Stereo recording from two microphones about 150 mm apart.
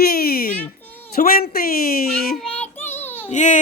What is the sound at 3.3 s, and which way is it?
Speech, 55° left (ahead or behind).